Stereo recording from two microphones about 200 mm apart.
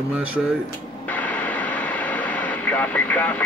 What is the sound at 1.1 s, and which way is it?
Radio, 10° left (ahead or behind).